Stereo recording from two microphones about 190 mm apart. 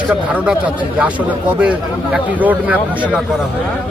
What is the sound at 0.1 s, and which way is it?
A man's voice, 5° right (ahead or behind).